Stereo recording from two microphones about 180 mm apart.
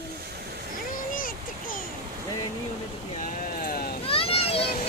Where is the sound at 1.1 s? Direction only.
50° left (ahead or behind).